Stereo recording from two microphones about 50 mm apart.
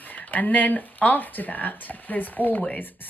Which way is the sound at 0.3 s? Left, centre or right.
Left.